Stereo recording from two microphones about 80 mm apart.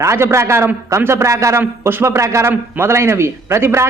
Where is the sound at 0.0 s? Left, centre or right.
Right.